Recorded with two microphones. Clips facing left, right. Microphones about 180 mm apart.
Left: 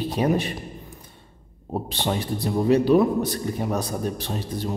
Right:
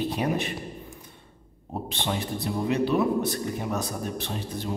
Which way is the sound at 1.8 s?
35° left (ahead or behind).